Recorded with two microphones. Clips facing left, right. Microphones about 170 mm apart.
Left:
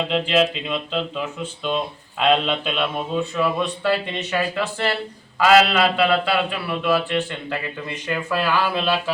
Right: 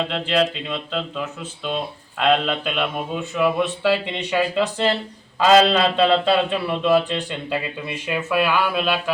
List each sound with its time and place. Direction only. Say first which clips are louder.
0.1 s a man's voice: left 2 dB; 5° left (ahead or behind)